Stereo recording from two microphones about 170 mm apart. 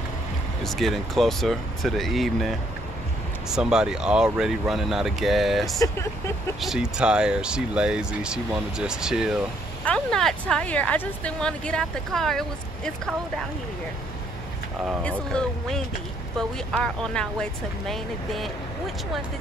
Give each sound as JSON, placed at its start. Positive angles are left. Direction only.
{"t": 0.7, "sound": "speech", "side_deg": 0}
{"t": 5.8, "sound": "speech", "side_deg": 15}
{"t": 6.6, "sound": "speech", "side_deg": -5}
{"t": 15.0, "sound": "speech", "side_deg": 5}